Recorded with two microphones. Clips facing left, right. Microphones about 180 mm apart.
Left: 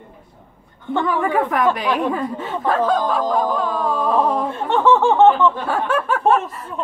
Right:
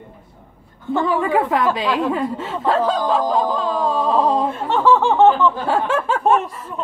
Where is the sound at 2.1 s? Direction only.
25° right (ahead or behind).